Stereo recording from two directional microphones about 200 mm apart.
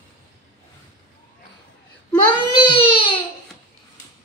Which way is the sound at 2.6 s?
25° left (ahead or behind).